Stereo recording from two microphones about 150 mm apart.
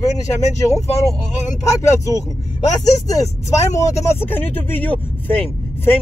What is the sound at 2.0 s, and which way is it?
Speech, 20° left (ahead or behind).